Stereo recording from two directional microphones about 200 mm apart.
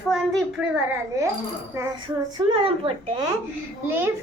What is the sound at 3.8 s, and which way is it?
Speech, 10° right (ahead or behind).